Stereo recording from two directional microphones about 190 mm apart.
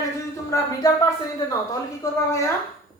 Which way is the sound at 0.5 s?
20° left (ahead or behind).